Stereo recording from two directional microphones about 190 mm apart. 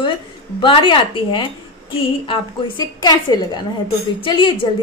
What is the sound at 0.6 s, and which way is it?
A woman's voice, 25° left (ahead or behind).